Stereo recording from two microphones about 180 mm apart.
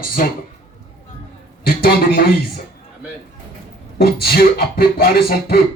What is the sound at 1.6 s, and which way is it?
A man's voice, 55° left (ahead or behind).